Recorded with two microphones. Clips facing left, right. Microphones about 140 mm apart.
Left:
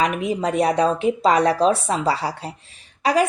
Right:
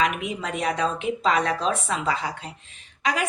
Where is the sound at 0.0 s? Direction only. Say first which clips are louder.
Left 5 dB; 35° left (ahead or behind).